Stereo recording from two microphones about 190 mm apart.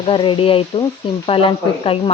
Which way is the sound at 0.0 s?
25° left (ahead or behind).